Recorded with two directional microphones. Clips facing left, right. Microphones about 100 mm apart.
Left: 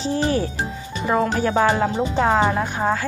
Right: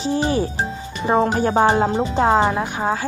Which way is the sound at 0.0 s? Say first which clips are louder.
Right 1 dB; 20° right (ahead or behind).